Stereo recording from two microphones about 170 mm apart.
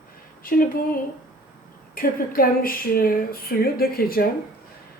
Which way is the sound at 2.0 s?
60° left (ahead or behind).